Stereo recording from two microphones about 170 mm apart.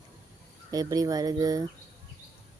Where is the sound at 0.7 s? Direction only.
20° right (ahead or behind).